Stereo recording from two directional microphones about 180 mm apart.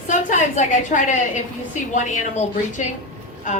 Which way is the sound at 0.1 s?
45° left (ahead or behind).